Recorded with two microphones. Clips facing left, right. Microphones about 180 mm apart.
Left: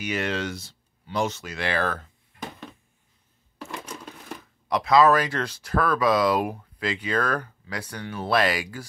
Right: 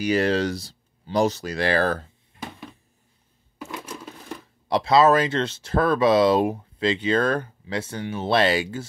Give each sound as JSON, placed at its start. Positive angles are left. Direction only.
{"t": 0.0, "sound": "speech", "side_deg": -35}
{"t": 3.7, "sound": "a sound", "side_deg": -5}
{"t": 4.6, "sound": "speech", "side_deg": -30}